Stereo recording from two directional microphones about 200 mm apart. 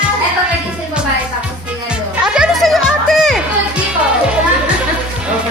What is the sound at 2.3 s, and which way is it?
Music, centre (ahead or behind).